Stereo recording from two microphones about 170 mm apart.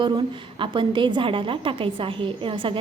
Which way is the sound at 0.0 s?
30° right (ahead or behind).